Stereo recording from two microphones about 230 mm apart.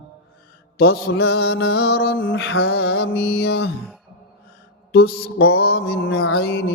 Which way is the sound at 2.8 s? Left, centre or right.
Left.